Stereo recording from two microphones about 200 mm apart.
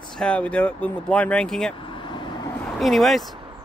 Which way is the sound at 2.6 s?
Centre (ahead or behind).